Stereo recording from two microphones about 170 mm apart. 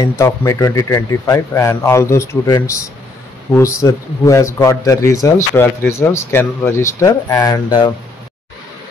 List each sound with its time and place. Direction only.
0.2 s a man's voice: 15° left (ahead or behind)